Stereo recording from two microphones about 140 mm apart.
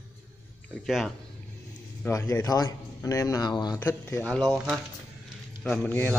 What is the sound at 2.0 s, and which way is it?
A man's voice, 20° left (ahead or behind).